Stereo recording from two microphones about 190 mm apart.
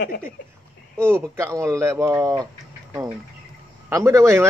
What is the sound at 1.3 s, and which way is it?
A man's voice, 15° right (ahead or behind).